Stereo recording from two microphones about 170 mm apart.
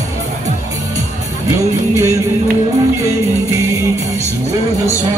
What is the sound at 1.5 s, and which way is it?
Music, 20° right (ahead or behind).